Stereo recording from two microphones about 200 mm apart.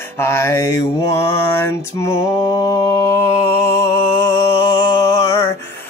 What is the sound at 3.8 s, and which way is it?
Mantra, 15° left (ahead or behind).